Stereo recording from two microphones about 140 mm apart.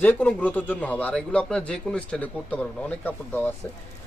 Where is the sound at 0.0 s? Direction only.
10° left (ahead or behind).